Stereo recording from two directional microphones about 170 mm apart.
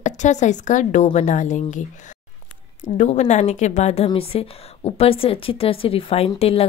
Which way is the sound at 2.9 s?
45° left (ahead or behind).